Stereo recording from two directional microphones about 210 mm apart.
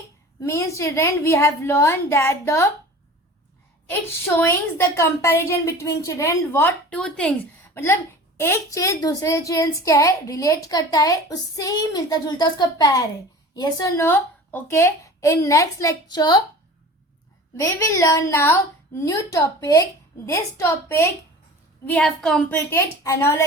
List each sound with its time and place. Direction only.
0.4 s a woman's voice: 15° left (ahead or behind)
3.9 s a woman's voice: 10° left (ahead or behind)
17.6 s a woman's voice: 15° left (ahead or behind)